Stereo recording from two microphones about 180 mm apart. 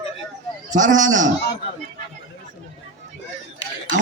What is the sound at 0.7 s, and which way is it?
Speech, 45° right (ahead or behind).